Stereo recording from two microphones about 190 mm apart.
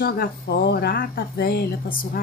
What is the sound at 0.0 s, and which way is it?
Speech, 55° left (ahead or behind).